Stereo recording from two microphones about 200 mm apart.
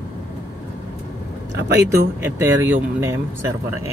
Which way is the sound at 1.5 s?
55° right (ahead or behind).